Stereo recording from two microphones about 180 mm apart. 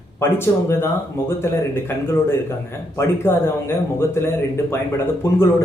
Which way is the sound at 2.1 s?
15° left (ahead or behind).